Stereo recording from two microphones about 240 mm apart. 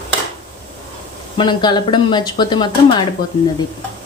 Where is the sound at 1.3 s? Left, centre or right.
Centre.